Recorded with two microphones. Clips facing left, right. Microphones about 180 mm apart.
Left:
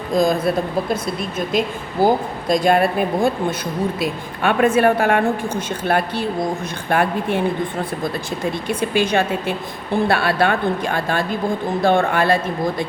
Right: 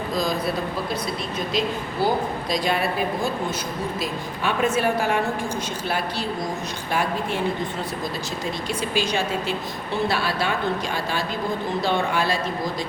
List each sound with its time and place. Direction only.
0.2 s speech: 50° left (ahead or behind)
1.5 s a woman's voice: 50° left (ahead or behind)
9.0 s a woman's voice: 55° left (ahead or behind)